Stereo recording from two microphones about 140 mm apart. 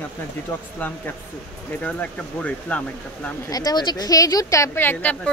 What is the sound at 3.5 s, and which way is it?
Speech, 25° left (ahead or behind).